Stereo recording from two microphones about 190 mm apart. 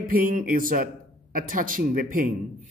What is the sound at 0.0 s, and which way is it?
Speech, 45° right (ahead or behind).